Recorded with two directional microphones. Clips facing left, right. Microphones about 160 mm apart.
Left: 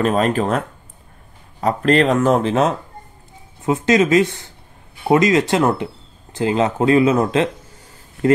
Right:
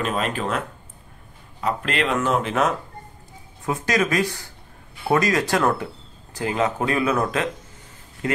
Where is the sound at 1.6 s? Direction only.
40° left (ahead or behind).